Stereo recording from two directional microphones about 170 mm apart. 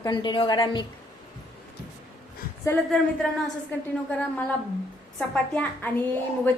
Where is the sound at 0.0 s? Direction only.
25° left (ahead or behind).